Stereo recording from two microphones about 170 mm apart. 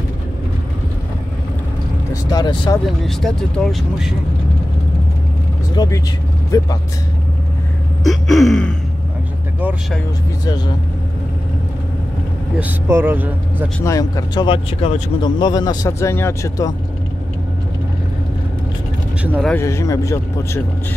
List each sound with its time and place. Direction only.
2.3 s speech: 25° left (ahead or behind)
3.0 s speech: 5° left (ahead or behind)
5.8 s speech: 25° left (ahead or behind)
8.0 s speech: centre (ahead or behind)
12.5 s speech: 10° right (ahead or behind)
13.8 s a man's voice: 20° left (ahead or behind)
19.4 s a man's voice: 15° left (ahead or behind)